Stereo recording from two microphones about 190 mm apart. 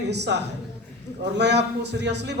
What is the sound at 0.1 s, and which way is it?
Speech, 65° right (ahead or behind).